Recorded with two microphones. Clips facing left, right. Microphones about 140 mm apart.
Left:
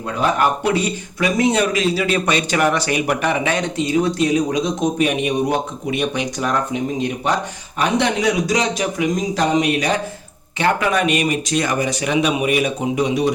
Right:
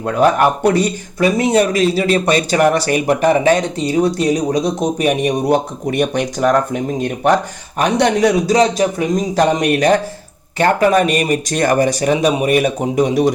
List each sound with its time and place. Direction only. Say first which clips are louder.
0.2 s speech: right 5 dB; 45° right (ahead or behind)